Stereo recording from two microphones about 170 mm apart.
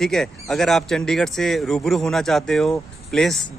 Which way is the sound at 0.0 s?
Centre (ahead or behind).